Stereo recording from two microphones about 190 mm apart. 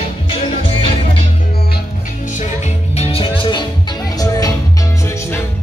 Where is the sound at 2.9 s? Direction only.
30° left (ahead or behind).